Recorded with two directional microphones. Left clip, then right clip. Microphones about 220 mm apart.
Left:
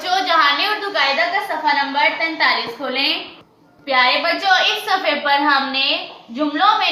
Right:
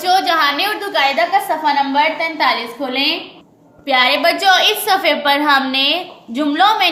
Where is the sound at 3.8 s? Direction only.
45° right (ahead or behind).